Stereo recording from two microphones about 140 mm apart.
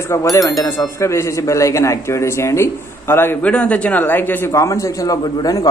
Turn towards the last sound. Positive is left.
turn(degrees=25)  # may be behind; listen again after turning